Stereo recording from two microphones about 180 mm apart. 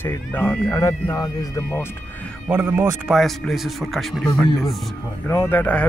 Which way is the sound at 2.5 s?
10° right (ahead or behind).